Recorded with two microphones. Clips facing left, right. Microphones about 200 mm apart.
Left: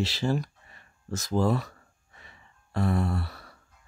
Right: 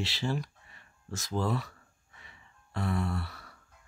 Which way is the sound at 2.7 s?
40° left (ahead or behind).